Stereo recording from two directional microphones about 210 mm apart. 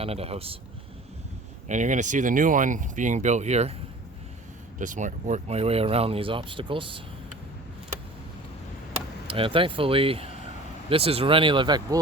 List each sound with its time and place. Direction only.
0.0 s speech: 30° right (ahead or behind)
1.6 s speech: 35° right (ahead or behind)
4.8 s speech: 35° right (ahead or behind)
9.2 s speech: 25° right (ahead or behind)